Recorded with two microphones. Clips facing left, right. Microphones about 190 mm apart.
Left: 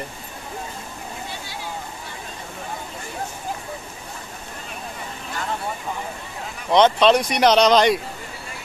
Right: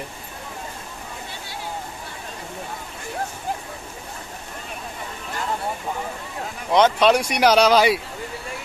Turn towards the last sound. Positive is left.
turn(degrees=-5)  # may be behind; listen again after turning